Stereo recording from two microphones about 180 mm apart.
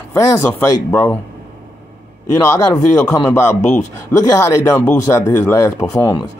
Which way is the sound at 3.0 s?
15° left (ahead or behind).